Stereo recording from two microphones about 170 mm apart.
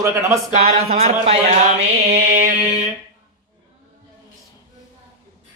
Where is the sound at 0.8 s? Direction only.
35° right (ahead or behind).